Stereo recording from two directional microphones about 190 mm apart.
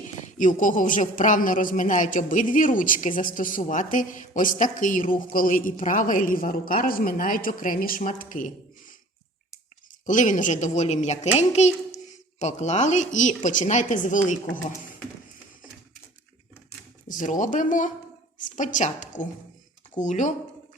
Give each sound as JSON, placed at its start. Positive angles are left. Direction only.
{"t": 0.3, "sound": "a woman's voice", "side_deg": 40}
{"t": 10.1, "sound": "speech", "side_deg": 40}
{"t": 17.1, "sound": "a woman's voice", "side_deg": 45}